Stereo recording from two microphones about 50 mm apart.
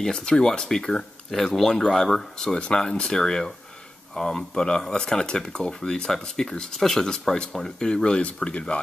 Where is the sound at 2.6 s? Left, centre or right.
Left.